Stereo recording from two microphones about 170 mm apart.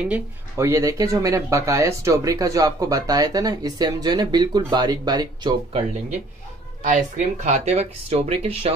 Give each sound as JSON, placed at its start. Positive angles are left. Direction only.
{"t": 0.0, "sound": "speech", "side_deg": -10}
{"t": 5.7, "sound": "speech", "side_deg": -35}
{"t": 6.8, "sound": "speech", "side_deg": -45}